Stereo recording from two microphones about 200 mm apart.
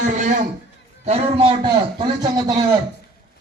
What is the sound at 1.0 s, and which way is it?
A man's voice, 30° right (ahead or behind).